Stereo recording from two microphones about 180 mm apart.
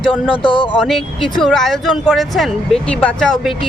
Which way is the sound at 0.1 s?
30° left (ahead or behind).